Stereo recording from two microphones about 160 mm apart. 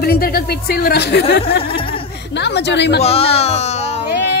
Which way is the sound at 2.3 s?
90° left.